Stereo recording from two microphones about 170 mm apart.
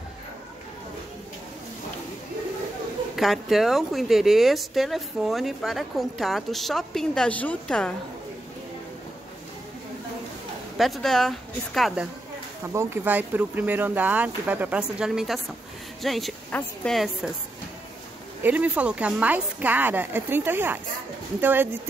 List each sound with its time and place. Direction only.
3.2 s a woman's voice: centre (ahead or behind)
10.8 s a woman's voice: centre (ahead or behind)
12.6 s a woman's voice: 15° right (ahead or behind)
18.4 s speech: 10° right (ahead or behind)